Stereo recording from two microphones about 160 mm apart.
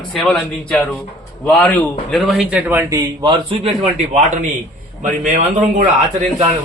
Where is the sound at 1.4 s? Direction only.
10° left (ahead or behind); by 3.7 s 30° right (ahead or behind).